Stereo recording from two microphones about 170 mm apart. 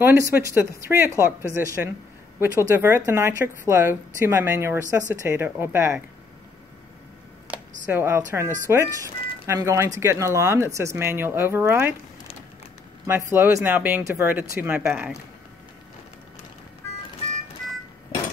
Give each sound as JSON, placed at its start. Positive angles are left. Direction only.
{"t": 0.0, "sound": "speech", "side_deg": -15}
{"t": 7.9, "sound": "speech", "side_deg": -15}
{"t": 13.0, "sound": "speech", "side_deg": -15}